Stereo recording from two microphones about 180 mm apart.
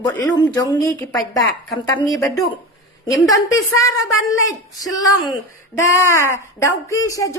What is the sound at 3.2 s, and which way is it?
Speech, 20° left (ahead or behind).